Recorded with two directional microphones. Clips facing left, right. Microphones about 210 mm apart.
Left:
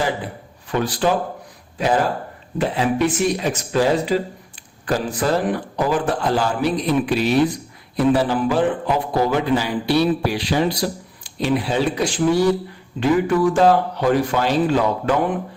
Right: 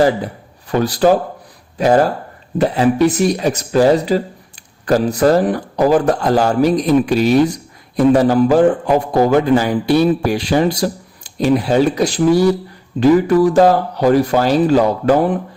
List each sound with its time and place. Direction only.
0.7 s a man's voice: 40° right (ahead or behind)